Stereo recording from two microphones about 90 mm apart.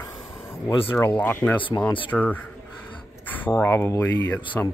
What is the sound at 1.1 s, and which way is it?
Speech, 20° left (ahead or behind).